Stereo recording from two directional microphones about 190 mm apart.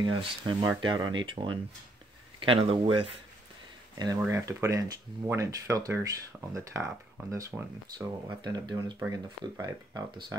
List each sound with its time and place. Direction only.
0.0 s speech: 25° right (ahead or behind)
4.3 s speech: 15° right (ahead or behind)